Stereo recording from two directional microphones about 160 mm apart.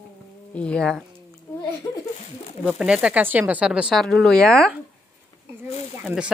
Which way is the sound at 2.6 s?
5° right (ahead or behind).